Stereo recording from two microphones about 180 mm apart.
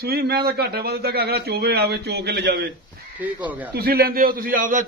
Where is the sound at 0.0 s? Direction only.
60° right (ahead or behind).